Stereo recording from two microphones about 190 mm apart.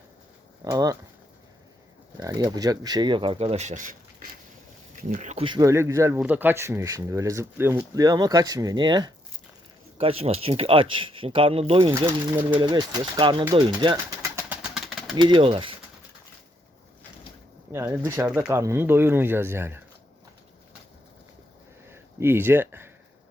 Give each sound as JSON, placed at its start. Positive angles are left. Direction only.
{"t": 0.6, "sound": "speech", "side_deg": -20}
{"t": 2.1, "sound": "speech", "side_deg": -20}
{"t": 5.5, "sound": "speech", "side_deg": -20}
{"t": 13.8, "sound": "pigeon", "side_deg": -15}
{"t": 15.1, "sound": "speech", "side_deg": -25}
{"t": 17.7, "sound": "speech", "side_deg": -15}
{"t": 21.8, "sound": "speech", "side_deg": -10}